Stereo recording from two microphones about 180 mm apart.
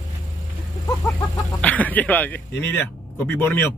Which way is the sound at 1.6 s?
10° left (ahead or behind).